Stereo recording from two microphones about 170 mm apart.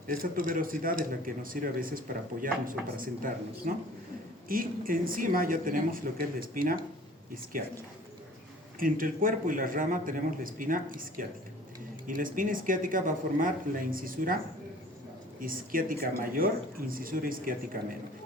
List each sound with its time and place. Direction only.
0.1 s speech: 55° right (ahead or behind)
8.8 s a man's voice: 55° right (ahead or behind)
15.4 s speech: 55° right (ahead or behind)